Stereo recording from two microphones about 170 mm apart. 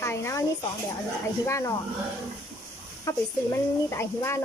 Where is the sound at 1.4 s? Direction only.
20° left (ahead or behind).